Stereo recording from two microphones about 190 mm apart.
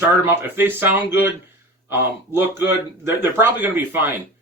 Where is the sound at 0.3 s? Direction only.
10° right (ahead or behind).